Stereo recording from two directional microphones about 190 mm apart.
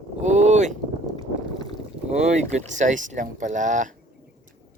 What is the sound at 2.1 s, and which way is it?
Speech, 35° right (ahead or behind).